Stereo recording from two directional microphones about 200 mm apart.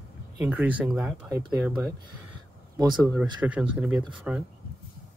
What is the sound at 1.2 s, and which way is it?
Speech, 15° right (ahead or behind).